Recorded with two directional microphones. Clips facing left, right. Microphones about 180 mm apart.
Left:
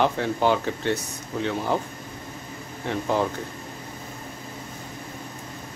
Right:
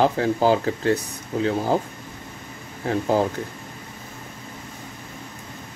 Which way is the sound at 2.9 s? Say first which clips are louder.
Right 4 dB; 40° right (ahead or behind).